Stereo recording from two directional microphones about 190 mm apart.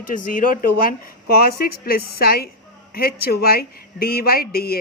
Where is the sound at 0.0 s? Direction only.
45° left (ahead or behind).